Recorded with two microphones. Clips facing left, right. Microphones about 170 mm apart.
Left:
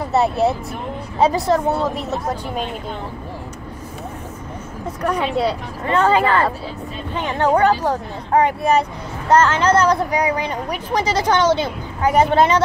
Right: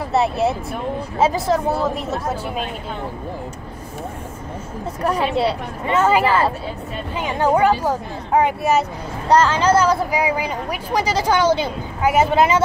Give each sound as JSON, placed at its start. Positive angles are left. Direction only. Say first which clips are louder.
{"t": 0.1, "sound": "speech", "louder": "left 1 dB", "side_deg": 0}
{"t": 5.0, "sound": "speech", "louder": "even", "side_deg": -30}
{"t": 5.9, "sound": "a woman's voice", "louder": "even", "side_deg": -5}